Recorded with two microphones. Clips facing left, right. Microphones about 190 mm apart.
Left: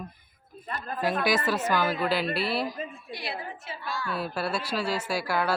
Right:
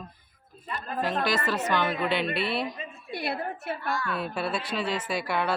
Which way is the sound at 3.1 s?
55° right (ahead or behind).